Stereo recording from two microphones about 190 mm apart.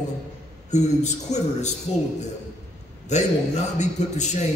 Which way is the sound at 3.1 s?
40° left (ahead or behind).